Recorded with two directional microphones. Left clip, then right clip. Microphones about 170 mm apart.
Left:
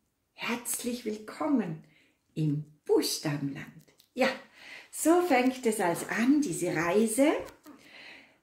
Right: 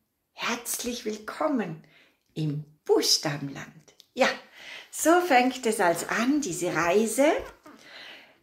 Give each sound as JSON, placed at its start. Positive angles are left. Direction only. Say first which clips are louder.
{"t": 0.4, "sound": "a woman's voice", "louder": "right 4 dB", "side_deg": 10}